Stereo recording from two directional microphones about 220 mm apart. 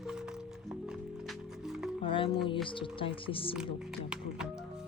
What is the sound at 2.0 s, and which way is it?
Music, 25° left (ahead or behind).